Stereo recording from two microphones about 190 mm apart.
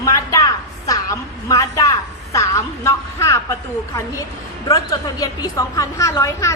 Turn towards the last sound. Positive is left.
turn(degrees=15)  # may be behind; listen again after turning